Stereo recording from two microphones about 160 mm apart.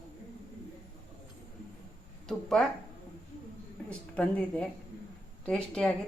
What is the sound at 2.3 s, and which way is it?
Speech, centre (ahead or behind).